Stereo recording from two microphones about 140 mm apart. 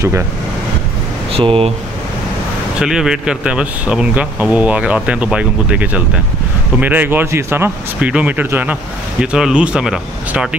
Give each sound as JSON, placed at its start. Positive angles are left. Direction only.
{"t": 1.3, "sound": "speech", "side_deg": -40}
{"t": 2.8, "sound": "speech", "side_deg": -5}